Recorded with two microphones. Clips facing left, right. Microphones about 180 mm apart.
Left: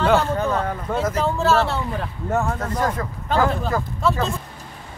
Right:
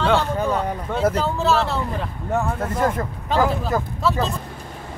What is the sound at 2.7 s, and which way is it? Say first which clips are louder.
Speech: right 4 dB; 25° right (ahead or behind).